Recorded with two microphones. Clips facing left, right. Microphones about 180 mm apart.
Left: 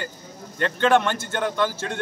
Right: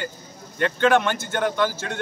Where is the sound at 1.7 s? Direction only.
35° left (ahead or behind).